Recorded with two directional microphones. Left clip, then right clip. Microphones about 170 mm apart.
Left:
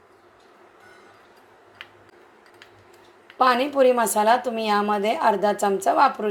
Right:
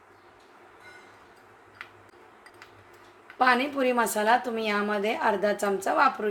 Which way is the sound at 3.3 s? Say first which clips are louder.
Left 5 dB; 20° left (ahead or behind).